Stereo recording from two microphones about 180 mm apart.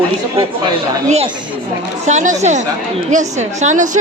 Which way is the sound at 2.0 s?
40° right (ahead or behind).